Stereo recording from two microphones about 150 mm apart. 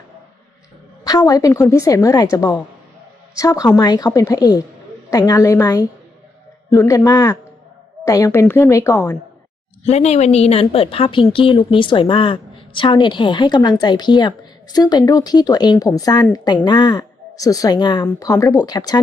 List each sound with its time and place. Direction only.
1.0 s a woman's voice: 25° left (ahead or behind)
9.8 s a woman's voice: 45° left (ahead or behind); by 18.9 s 25° left (ahead or behind)